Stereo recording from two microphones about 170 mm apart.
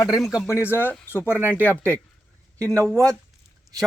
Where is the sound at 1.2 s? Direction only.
10° right (ahead or behind).